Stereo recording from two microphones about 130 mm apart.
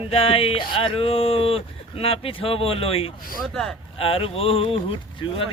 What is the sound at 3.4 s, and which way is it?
Speech, centre (ahead or behind).